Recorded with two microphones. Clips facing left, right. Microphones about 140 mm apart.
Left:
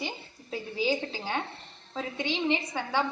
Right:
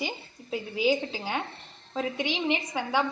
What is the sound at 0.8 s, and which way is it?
A woman's voice, 15° right (ahead or behind).